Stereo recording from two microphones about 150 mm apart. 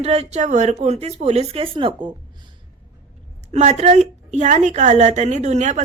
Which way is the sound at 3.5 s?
45° right (ahead or behind).